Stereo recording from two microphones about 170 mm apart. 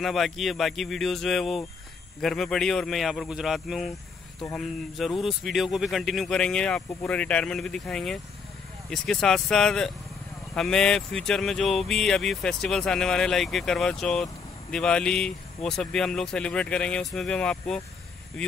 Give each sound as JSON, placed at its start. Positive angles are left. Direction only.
{"t": 0.0, "sound": "speech", "side_deg": 0}